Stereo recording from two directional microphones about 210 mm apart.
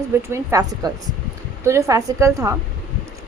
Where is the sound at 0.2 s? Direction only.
10° right (ahead or behind).